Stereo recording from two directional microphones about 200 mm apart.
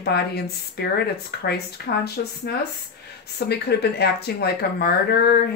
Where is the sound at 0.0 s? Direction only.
55° left (ahead or behind).